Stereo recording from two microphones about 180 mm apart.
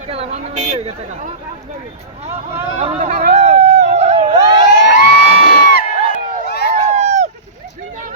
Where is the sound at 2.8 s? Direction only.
40° right (ahead or behind).